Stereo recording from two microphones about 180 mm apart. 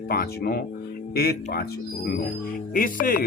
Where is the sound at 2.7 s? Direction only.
50° left (ahead or behind).